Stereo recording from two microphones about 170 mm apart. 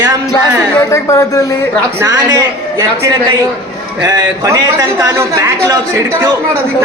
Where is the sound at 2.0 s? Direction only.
20° right (ahead or behind).